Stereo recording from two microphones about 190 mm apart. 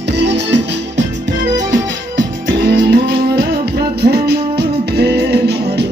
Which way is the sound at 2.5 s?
55° right (ahead or behind).